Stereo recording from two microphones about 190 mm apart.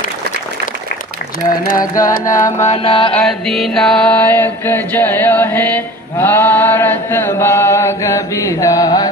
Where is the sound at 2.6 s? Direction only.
35° left (ahead or behind).